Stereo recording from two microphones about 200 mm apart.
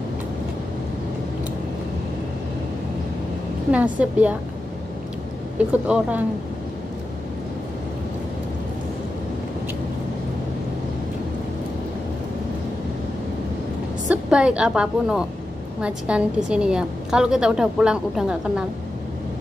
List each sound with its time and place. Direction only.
3.7 s a woman's voice: 5° right (ahead or behind)
5.7 s a woman's voice: 5° right (ahead or behind)
14.0 s a woman's voice: 5° right (ahead or behind)